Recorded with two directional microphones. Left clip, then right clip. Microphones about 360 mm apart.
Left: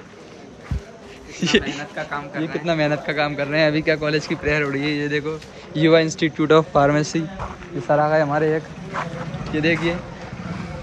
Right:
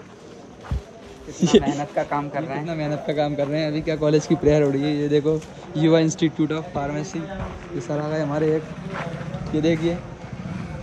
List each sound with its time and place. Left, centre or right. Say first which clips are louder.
1.4 s a man's voice: right 2 dB; centre
2.0 s speech: right 2 dB; right
2.6 s a man's voice: left 6 dB; centre
6.4 s speech: left 10 dB; centre
7.0 s speech: left 6 dB; centre
9.6 s a man's voice: left 2 dB; centre